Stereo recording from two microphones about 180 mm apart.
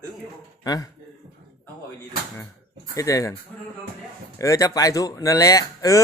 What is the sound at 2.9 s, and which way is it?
Speech, 20° left (ahead or behind).